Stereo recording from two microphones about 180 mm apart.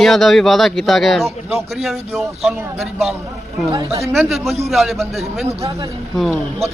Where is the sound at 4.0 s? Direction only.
Centre (ahead or behind).